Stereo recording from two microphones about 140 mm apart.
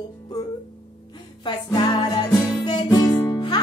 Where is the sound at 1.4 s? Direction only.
30° left (ahead or behind).